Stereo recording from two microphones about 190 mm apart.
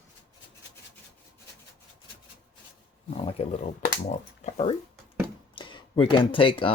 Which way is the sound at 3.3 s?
35° left (ahead or behind).